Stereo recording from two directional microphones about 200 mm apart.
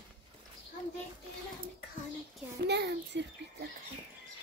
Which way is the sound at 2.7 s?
60° right (ahead or behind).